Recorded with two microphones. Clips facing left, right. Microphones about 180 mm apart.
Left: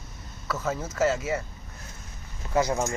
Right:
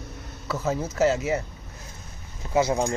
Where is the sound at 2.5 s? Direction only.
20° right (ahead or behind).